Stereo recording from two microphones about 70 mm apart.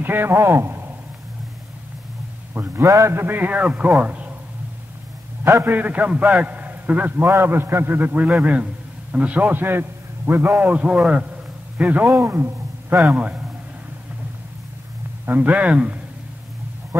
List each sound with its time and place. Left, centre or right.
0.0 s speech: right
2.5 s a man's voice: right; by 4.3 s centre
5.4 s a man's voice: right
7.2 s a man's voice: right
12.1 s a man's voice: right
13.1 s a man's voice: right
15.2 s a man's voice: right